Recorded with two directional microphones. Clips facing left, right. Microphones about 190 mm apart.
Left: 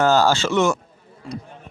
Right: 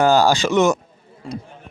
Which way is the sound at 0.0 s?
15° right (ahead or behind).